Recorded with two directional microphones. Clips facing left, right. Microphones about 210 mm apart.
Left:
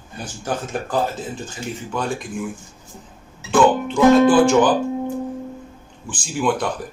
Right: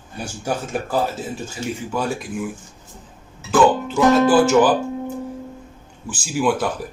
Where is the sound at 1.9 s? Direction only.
5° right (ahead or behind).